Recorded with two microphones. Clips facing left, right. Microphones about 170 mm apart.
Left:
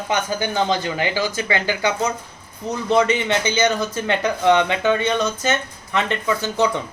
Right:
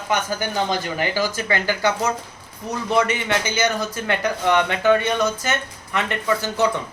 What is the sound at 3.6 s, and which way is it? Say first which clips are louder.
Speech: left 3 dB; 20° left (ahead or behind).